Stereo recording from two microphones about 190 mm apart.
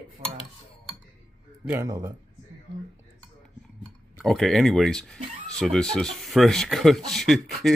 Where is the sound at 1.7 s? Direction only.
15° right (ahead or behind).